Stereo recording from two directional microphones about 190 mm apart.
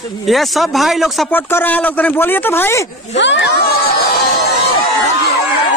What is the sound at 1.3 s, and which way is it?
Speech, 10° left (ahead or behind).